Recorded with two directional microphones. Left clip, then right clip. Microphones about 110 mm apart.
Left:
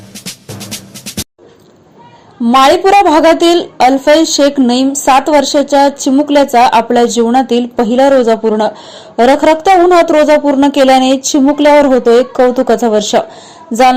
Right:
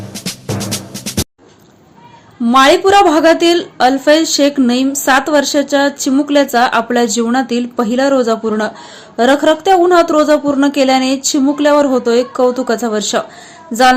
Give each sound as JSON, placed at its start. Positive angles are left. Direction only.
{"t": 0.1, "sound": "music", "side_deg": 0}
{"t": 2.6, "sound": "a woman's voice", "side_deg": 0}